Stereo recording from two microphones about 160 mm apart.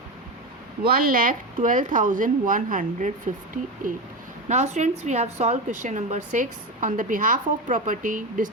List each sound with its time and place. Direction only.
0.8 s a woman's voice: 70° right (ahead or behind)